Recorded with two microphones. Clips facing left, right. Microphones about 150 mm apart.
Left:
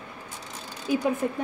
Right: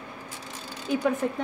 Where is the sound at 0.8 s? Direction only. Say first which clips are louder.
Even; 5° left (ahead or behind).